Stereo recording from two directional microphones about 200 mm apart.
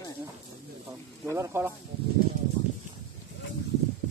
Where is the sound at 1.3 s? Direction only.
15° right (ahead or behind).